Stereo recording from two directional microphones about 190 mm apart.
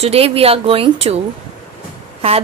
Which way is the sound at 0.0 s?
30° right (ahead or behind).